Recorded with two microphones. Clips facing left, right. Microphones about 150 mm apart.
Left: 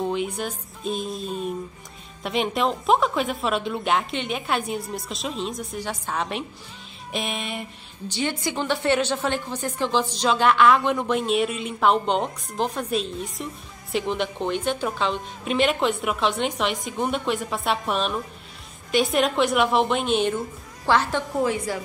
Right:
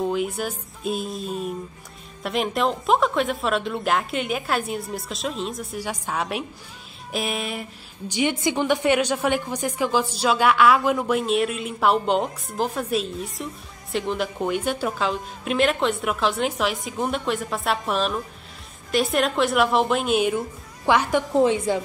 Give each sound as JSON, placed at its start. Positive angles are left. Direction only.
{"t": 0.0, "sound": "a woman's voice", "side_deg": -5}
{"t": 8.1, "sound": "a woman's voice", "side_deg": -15}
{"t": 21.3, "sound": "speech", "side_deg": -25}